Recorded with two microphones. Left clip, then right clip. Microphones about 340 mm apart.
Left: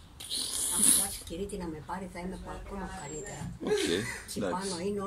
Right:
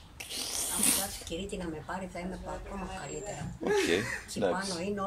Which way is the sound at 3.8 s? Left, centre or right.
Right.